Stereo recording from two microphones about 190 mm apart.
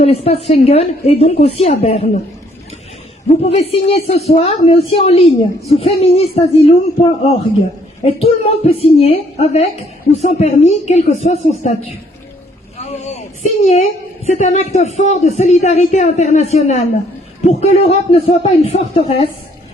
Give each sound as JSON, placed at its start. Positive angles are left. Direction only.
{"t": 0.0, "sound": "a woman's voice", "side_deg": 30}
{"t": 3.2, "sound": "a woman's voice", "side_deg": 35}
{"t": 14.3, "sound": "a woman's voice", "side_deg": 40}